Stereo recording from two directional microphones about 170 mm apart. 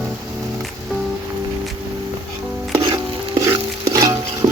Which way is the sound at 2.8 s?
25° right (ahead or behind).